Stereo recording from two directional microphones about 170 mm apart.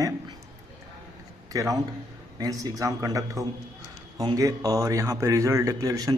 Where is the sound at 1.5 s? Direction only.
20° right (ahead or behind).